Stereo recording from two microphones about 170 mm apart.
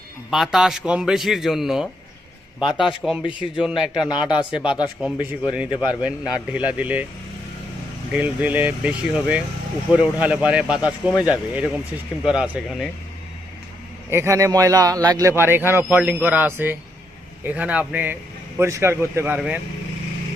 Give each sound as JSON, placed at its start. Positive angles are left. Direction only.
{"t": 0.3, "sound": "a man's voice", "side_deg": 0}
{"t": 3.2, "sound": "speech", "side_deg": 30}
{"t": 3.6, "sound": "a man's voice", "side_deg": -5}
{"t": 8.1, "sound": "a man's voice", "side_deg": -10}
{"t": 14.1, "sound": "speech", "side_deg": -15}